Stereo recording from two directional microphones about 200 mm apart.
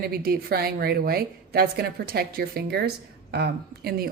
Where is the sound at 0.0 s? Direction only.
50° right (ahead or behind).